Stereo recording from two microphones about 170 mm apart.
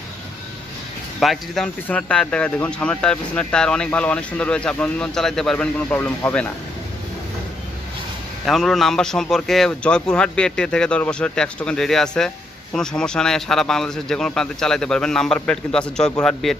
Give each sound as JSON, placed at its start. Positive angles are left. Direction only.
{"t": 1.2, "sound": "speech", "side_deg": 0}
{"t": 8.5, "sound": "speech", "side_deg": 0}